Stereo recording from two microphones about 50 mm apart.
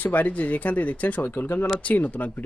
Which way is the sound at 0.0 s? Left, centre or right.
Left.